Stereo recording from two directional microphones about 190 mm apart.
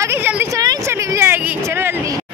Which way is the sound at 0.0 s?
10° right (ahead or behind).